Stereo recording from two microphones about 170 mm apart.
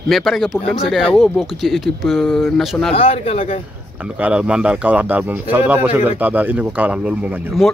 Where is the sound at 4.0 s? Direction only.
5° right (ahead or behind).